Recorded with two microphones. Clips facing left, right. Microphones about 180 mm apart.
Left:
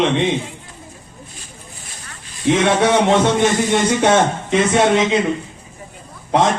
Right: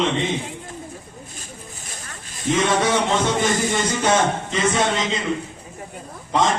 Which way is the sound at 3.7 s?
65° left (ahead or behind).